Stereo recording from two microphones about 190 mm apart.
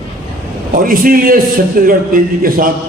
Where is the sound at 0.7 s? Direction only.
50° right (ahead or behind).